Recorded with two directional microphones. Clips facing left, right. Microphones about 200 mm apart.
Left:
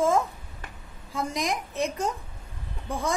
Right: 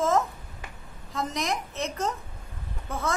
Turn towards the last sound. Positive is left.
turn(degrees=15)  # may be behind; listen again after turning